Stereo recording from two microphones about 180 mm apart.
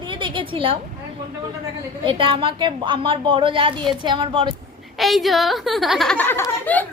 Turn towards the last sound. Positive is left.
turn(degrees=10)  # may be behind; listen again after turning